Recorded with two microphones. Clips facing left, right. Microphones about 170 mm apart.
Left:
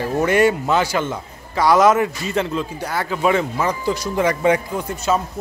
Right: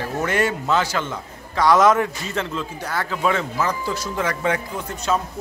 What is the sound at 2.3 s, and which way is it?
A man's voice, 15° left (ahead or behind).